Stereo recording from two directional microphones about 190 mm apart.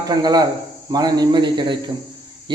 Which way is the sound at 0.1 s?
20° right (ahead or behind).